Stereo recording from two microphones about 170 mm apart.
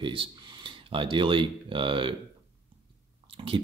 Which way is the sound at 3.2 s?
30° right (ahead or behind).